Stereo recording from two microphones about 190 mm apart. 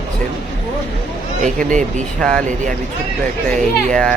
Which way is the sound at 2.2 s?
5° left (ahead or behind).